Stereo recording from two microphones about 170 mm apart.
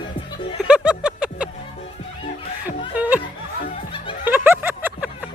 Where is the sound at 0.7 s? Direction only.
5° right (ahead or behind).